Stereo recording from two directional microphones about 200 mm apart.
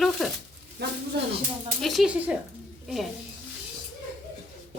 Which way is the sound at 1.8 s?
Centre (ahead or behind).